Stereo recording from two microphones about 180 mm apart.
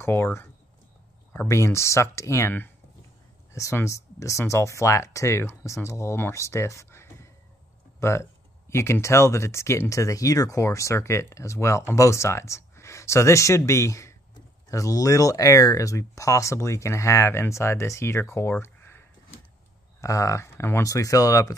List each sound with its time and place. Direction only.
0.0 s speech: 15° left (ahead or behind)